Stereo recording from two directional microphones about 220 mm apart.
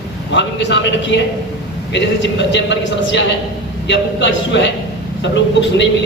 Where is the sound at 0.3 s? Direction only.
55° left (ahead or behind).